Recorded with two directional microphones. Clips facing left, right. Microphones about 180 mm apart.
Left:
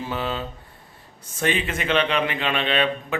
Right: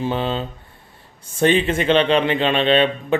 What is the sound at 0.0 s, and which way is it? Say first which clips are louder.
A man's voice: right 5 dB; 25° right (ahead or behind).